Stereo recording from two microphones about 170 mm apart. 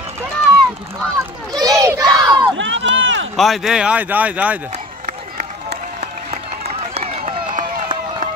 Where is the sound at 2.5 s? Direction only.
90° right.